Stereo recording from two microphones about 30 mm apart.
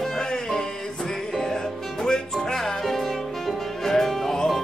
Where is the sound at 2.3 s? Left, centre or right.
Centre.